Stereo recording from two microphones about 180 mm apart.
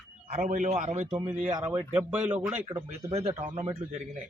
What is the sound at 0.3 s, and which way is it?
A man's voice, 45° right (ahead or behind).